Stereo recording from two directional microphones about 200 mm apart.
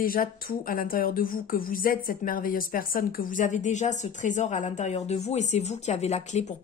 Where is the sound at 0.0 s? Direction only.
45° left (ahead or behind).